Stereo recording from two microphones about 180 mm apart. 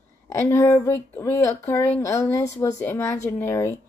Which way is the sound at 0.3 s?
15° left (ahead or behind).